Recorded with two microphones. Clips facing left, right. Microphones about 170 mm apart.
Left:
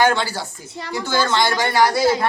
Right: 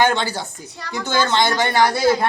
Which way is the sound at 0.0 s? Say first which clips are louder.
Even; 20° right (ahead or behind).